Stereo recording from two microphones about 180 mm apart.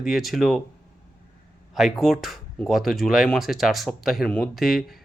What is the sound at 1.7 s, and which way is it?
Speech, centre (ahead or behind).